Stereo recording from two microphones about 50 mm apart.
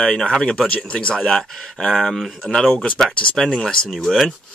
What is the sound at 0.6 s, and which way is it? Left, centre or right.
Speech, left.